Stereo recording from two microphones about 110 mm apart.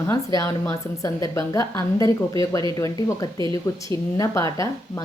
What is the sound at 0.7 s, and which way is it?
A woman's voice, 30° left (ahead or behind).